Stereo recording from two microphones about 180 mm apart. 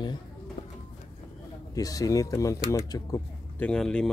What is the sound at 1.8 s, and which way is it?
Speech, 20° left (ahead or behind).